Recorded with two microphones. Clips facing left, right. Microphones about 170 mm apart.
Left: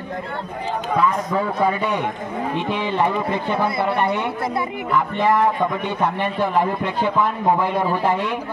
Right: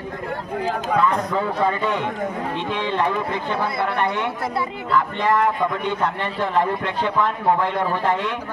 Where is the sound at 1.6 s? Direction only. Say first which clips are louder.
Left 1 dB; 15° left (ahead or behind).